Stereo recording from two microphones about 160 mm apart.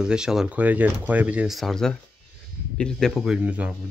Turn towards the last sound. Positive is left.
turn(degrees=-5)  # may be behind; listen again after turning